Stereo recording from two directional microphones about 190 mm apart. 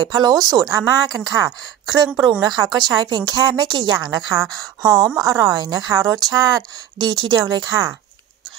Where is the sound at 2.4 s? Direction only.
20° right (ahead or behind).